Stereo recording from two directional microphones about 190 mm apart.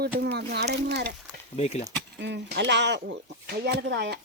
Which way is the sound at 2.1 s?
65° right (ahead or behind).